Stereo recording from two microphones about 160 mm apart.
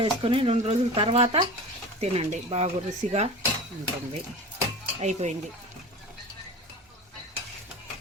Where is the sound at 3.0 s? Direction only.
50° right (ahead or behind).